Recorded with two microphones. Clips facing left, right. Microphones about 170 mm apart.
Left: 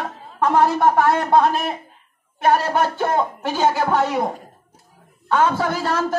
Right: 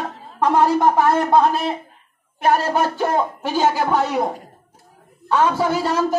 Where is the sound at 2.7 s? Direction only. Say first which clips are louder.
Even; 10° right (ahead or behind).